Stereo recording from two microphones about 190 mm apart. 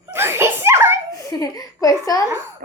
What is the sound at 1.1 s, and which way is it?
Speech, 20° left (ahead or behind).